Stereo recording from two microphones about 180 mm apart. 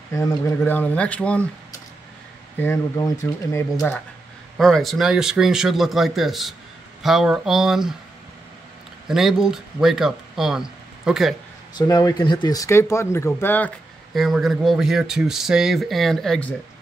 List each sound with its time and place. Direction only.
0.1 s speech: 15° left (ahead or behind)
3.5 s speech: 15° left (ahead or behind)
4.6 s speech: centre (ahead or behind)
9.0 s speech: centre (ahead or behind)
11.7 s speech: 20° left (ahead or behind)
14.1 s speech: centre (ahead or behind)